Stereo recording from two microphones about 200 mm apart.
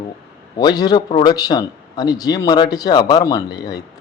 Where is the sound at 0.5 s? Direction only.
20° left (ahead or behind).